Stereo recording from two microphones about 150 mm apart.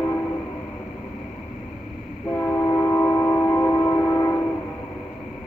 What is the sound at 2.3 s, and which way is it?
Train, 15° left (ahead or behind).